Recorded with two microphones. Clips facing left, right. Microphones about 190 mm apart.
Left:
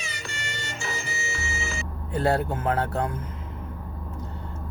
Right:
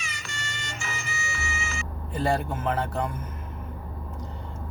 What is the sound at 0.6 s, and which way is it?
Music, 35° left (ahead or behind).